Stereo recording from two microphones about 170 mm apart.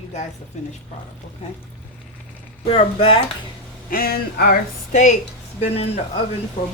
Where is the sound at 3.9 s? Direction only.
60° left (ahead or behind).